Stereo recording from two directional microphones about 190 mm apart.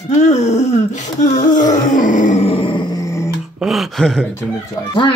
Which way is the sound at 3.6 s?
Centre (ahead or behind).